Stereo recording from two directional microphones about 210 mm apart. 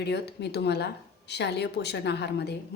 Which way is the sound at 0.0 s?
50° left (ahead or behind).